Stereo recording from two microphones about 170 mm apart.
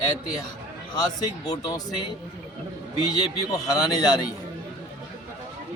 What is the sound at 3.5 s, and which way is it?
Speech, 20° left (ahead or behind).